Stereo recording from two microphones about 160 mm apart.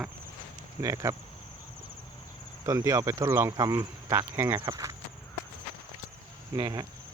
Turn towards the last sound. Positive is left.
turn(degrees=-25)  # may be behind; listen again after turning